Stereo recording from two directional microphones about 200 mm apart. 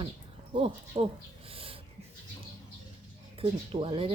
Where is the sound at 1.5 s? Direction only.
30° right (ahead or behind).